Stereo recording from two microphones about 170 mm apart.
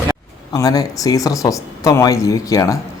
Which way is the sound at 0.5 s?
20° left (ahead or behind).